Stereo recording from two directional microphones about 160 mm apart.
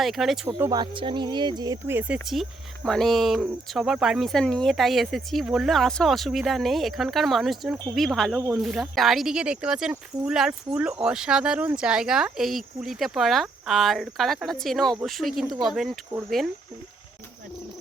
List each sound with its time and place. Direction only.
0.0 s speech: centre (ahead or behind)
0.4 s speech: 20° right (ahead or behind)
2.0 s speech: 5° right (ahead or behind)